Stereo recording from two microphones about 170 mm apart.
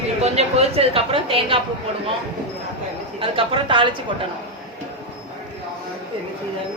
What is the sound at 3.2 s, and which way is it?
Speech, 30° right (ahead or behind).